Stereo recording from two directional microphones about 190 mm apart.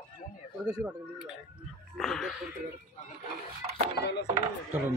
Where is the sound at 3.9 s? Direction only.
60° left (ahead or behind).